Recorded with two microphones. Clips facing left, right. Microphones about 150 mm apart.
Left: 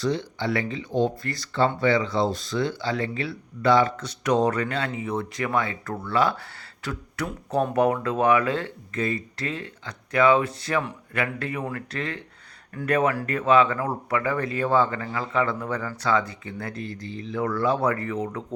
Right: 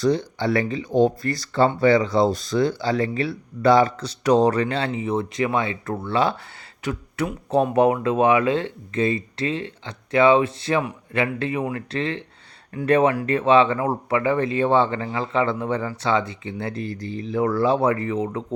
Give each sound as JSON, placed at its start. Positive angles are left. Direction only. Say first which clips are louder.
{"t": 0.0, "sound": "speech", "louder": "right 5 dB", "side_deg": -40}